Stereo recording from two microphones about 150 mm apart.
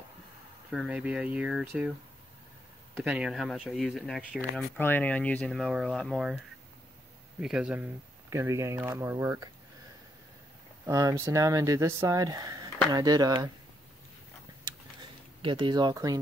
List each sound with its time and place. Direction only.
0.7 s speech: 5° right (ahead or behind)
3.0 s speech: 5° right (ahead or behind)
4.7 s speech: 15° left (ahead or behind); by 7.9 s 10° right (ahead or behind)
8.3 s speech: 20° right (ahead or behind)
10.9 s speech: 20° right (ahead or behind)
14.7 s a sound: 25° right (ahead or behind)
15.4 s speech: 35° right (ahead or behind)